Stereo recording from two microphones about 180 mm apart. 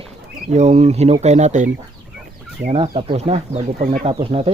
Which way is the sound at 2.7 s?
30° right (ahead or behind).